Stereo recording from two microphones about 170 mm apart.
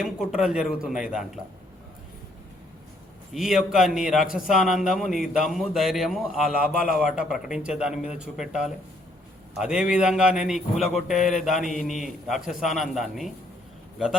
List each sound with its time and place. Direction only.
0.0 s a man's voice: centre (ahead or behind)
3.3 s a man's voice: 5° right (ahead or behind)